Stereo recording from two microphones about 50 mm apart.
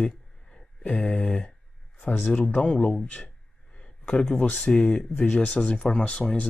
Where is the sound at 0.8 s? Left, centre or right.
Left.